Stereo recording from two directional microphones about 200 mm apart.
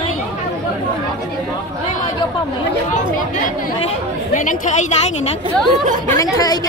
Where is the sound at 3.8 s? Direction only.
35° left (ahead or behind).